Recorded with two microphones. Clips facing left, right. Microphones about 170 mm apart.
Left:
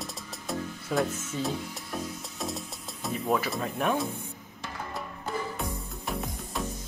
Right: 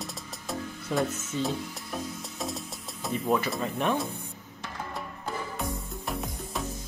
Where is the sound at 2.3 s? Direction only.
Centre (ahead or behind).